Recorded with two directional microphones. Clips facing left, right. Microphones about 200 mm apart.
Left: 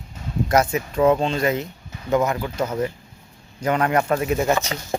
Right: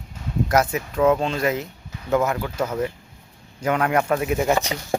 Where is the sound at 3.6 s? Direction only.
5° right (ahead or behind).